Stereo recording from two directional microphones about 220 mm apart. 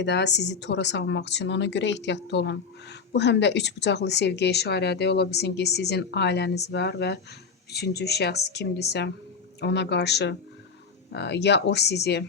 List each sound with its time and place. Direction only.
0.0 s speech: 50° left (ahead or behind)